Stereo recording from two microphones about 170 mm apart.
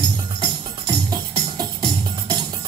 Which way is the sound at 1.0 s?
20° right (ahead or behind).